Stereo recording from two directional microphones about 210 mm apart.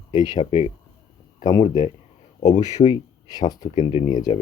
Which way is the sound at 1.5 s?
20° left (ahead or behind).